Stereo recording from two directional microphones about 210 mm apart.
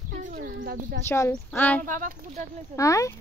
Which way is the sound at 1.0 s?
15° left (ahead or behind).